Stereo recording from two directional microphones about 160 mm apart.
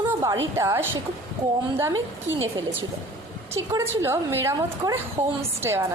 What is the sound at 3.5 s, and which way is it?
A woman's voice, 15° right (ahead or behind).